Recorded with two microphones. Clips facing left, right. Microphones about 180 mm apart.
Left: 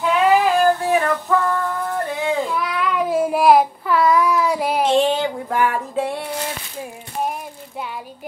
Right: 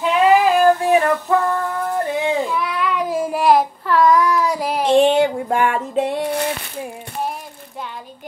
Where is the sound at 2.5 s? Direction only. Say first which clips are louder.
Even; centre (ahead or behind).